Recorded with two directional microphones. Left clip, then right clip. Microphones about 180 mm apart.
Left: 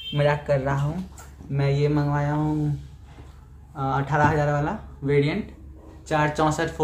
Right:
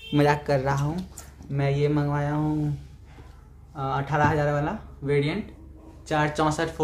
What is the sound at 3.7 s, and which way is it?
Speech, centre (ahead or behind).